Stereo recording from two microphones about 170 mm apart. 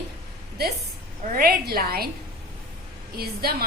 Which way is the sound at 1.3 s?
60° right (ahead or behind).